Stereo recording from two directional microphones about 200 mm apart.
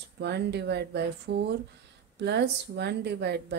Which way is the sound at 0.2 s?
55° right (ahead or behind).